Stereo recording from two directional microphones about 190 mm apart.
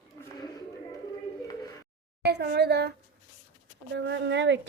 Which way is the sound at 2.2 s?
60° right (ahead or behind).